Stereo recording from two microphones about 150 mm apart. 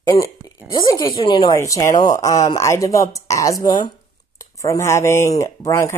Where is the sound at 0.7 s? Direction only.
30° left (ahead or behind).